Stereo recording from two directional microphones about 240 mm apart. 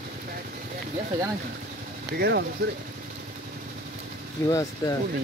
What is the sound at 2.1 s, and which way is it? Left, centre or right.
Speech, right.